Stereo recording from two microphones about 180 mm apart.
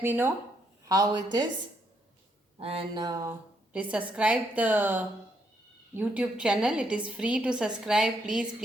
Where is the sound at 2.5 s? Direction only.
30° right (ahead or behind).